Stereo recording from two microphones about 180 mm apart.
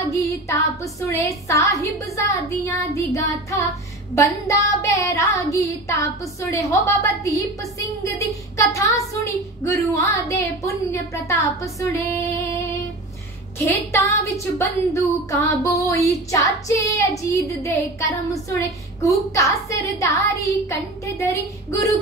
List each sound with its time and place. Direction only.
0.1 s a woman's voice: 15° left (ahead or behind)
8.5 s a woman's voice: 15° left (ahead or behind)
13.6 s a woman's voice: 15° left (ahead or behind)